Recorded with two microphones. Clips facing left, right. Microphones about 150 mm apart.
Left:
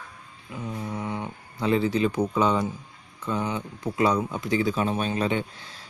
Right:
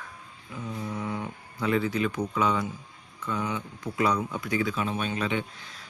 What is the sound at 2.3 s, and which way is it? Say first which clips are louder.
Speech: left 3 dB; 30° left (ahead or behind).